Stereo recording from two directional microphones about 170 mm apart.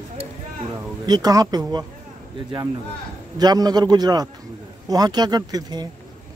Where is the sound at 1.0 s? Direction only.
25° right (ahead or behind).